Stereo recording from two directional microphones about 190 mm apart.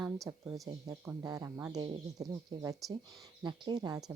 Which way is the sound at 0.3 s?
15° right (ahead or behind).